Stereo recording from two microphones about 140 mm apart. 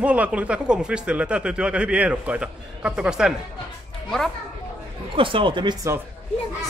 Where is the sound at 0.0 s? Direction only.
10° right (ahead or behind).